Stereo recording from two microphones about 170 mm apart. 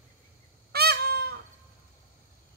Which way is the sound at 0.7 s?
70° right (ahead or behind).